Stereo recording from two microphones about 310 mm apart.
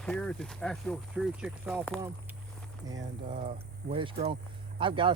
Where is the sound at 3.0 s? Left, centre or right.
Right.